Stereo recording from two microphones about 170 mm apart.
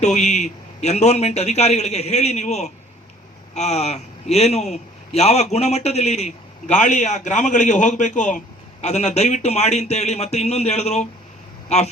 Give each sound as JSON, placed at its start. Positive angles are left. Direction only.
{"t": 0.0, "sound": "a man's voice", "side_deg": 45}